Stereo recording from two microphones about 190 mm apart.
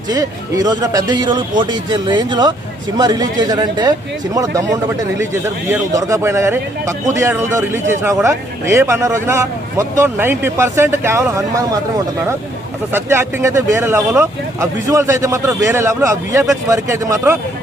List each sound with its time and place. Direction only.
0.1 s a man's voice: 20° right (ahead or behind)
12.9 s a man's voice: 10° right (ahead or behind)